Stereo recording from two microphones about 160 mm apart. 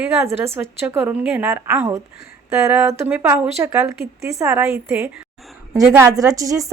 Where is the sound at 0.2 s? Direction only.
15° right (ahead or behind).